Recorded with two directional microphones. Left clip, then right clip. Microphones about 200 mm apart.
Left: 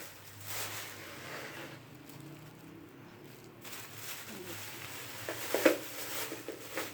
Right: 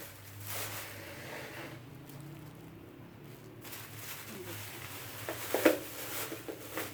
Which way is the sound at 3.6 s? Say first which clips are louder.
Left 1 dB; centre (ahead or behind).